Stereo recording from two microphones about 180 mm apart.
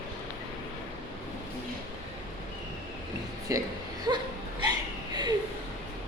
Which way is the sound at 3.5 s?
20° right (ahead or behind).